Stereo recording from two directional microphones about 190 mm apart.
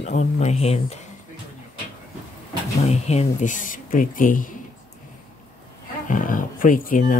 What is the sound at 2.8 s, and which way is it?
Speech, 35° left (ahead or behind).